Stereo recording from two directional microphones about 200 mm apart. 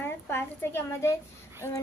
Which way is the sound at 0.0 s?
10° left (ahead or behind).